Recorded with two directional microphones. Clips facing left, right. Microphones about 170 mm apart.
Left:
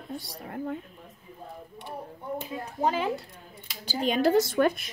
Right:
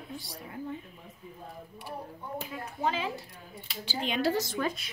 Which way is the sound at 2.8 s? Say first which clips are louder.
Left 5 dB; 50° left (ahead or behind).